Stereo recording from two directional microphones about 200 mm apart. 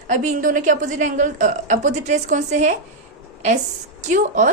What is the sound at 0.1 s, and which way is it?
A woman's voice, 40° right (ahead or behind).